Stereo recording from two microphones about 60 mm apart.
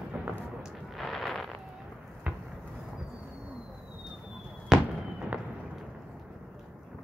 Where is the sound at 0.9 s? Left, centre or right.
Centre.